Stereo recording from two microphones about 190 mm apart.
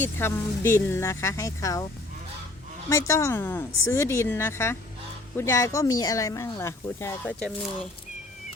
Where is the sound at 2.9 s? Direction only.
15° left (ahead or behind).